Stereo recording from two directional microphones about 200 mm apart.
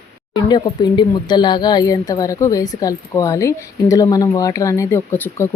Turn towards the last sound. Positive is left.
turn(degrees=10)  # may be behind; listen again after turning